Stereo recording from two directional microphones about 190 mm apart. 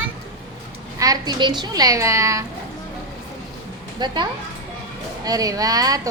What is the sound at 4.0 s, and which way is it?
A woman's voice, 25° right (ahead or behind).